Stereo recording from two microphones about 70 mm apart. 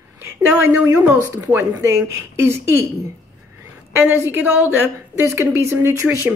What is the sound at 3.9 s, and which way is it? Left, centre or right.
A woman's voice, right.